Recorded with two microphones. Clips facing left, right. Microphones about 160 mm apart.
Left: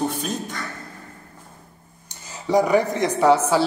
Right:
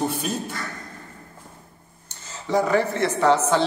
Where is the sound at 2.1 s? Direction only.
10° left (ahead or behind).